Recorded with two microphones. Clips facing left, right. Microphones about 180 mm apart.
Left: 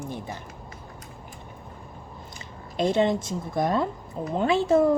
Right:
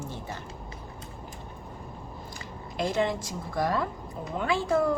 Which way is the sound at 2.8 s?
20° left (ahead or behind).